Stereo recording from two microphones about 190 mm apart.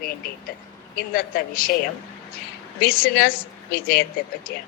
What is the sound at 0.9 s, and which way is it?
Speech, 50° left (ahead or behind).